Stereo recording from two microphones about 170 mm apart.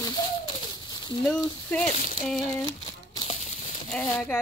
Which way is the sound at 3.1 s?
30° left (ahead or behind).